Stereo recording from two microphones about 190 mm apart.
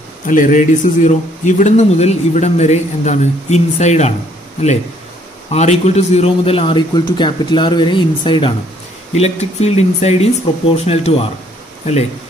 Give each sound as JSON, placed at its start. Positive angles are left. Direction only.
{"t": 0.3, "sound": "speech", "side_deg": 45}
{"t": 5.5, "sound": "a man's voice", "side_deg": 35}